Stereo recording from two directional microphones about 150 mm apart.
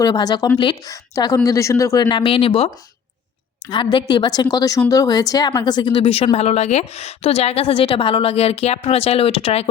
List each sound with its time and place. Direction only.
0.0 s speech: 25° left (ahead or behind)
3.7 s a woman's voice: 30° left (ahead or behind)